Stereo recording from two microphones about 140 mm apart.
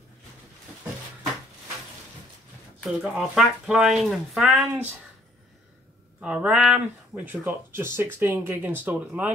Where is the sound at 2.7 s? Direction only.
5° right (ahead or behind).